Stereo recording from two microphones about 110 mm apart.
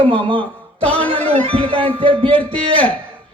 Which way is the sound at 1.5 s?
55° right (ahead or behind).